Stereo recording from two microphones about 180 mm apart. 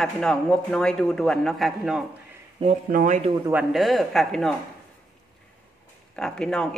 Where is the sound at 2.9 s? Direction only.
50° right (ahead or behind).